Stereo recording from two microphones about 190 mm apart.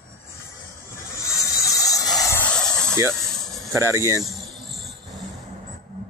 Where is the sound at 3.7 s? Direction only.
15° right (ahead or behind).